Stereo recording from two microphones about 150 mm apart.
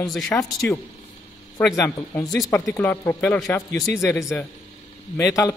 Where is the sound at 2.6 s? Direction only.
15° left (ahead or behind).